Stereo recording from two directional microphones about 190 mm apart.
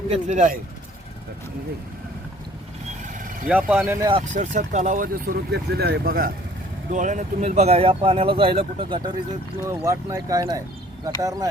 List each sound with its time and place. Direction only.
0.1 s speech: 40° right (ahead or behind)
3.5 s speech: 10° right (ahead or behind)
4.4 s speech: 40° right (ahead or behind)
6.9 s speech: 40° right (ahead or behind)
9.6 s speech: 15° right (ahead or behind)